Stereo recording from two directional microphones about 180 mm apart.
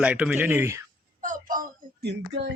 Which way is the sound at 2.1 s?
70° right (ahead or behind).